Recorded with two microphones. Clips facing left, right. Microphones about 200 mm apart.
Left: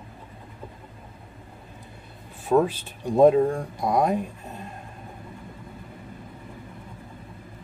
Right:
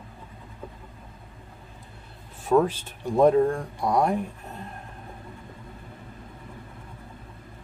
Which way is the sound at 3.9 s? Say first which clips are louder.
Left 1 dB; 15° left (ahead or behind).